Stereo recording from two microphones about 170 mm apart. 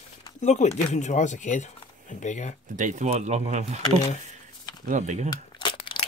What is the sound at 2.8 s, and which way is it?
Speech, 45° right (ahead or behind).